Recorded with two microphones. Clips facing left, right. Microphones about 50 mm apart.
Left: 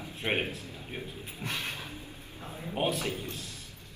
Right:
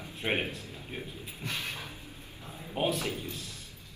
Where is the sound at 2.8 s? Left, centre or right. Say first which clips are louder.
Even; centre.